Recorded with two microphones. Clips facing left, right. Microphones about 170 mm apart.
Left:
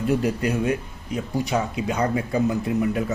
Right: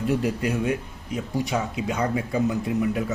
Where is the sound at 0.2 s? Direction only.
60° left (ahead or behind).